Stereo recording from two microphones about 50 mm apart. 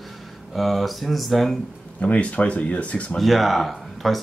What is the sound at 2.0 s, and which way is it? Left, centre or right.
Speech, left.